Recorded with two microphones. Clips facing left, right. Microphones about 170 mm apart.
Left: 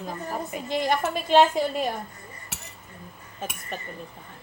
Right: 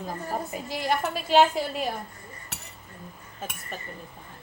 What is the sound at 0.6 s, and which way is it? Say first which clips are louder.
A woman's voice: left 4 dB; 5° right (ahead or behind).